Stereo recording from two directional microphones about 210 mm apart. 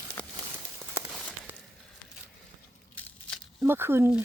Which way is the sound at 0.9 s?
10° right (ahead or behind).